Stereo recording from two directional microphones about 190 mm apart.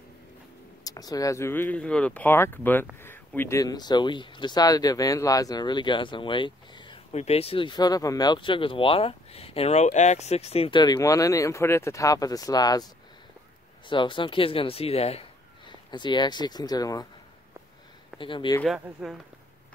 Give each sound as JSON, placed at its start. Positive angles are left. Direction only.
{"t": 0.8, "sound": "speech", "side_deg": 20}
{"t": 18.2, "sound": "speech", "side_deg": 25}
{"t": 18.6, "sound": "speech", "side_deg": 0}